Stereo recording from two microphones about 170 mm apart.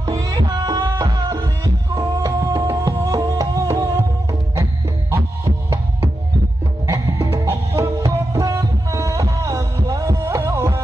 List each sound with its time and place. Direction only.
0.0 s music: 20° right (ahead or behind)
2.8 s music: 25° right (ahead or behind)
7.1 s music: 15° right (ahead or behind)